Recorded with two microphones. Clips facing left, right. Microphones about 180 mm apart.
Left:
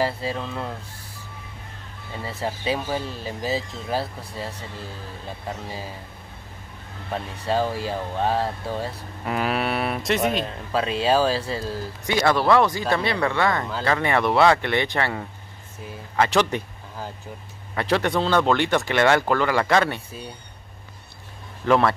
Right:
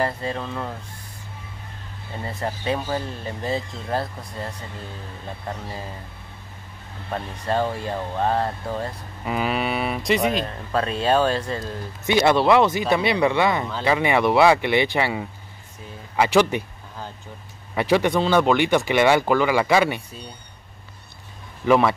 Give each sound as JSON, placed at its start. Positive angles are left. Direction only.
{"t": 0.0, "sound": "speech", "side_deg": 5}
{"t": 2.2, "sound": "speech", "side_deg": 5}
{"t": 5.7, "sound": "speech", "side_deg": 5}
{"t": 7.1, "sound": "speech", "side_deg": 0}
{"t": 12.1, "sound": "speech", "side_deg": -20}
{"t": 17.8, "sound": "speech", "side_deg": 0}
{"t": 21.6, "sound": "speech", "side_deg": -5}